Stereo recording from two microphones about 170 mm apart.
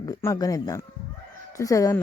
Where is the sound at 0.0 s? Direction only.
20° left (ahead or behind).